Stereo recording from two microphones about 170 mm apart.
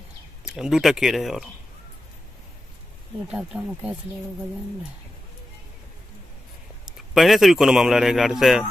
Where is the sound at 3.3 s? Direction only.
5° right (ahead or behind).